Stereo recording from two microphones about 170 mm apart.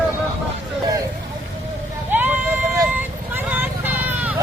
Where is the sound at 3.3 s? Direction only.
10° right (ahead or behind).